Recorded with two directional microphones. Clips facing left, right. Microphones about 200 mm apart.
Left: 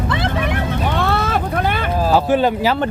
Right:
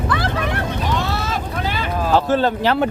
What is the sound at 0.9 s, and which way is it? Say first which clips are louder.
Vehicle: left 6 dB; 55° left (ahead or behind).